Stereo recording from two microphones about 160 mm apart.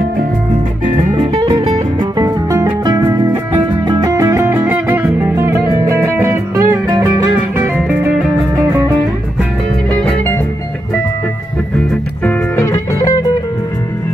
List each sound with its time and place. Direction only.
0.8 s music: 30° right (ahead or behind); by 8.1 s 15° right (ahead or behind)
9.9 s music: 10° left (ahead or behind)
12.3 s music: 20° left (ahead or behind)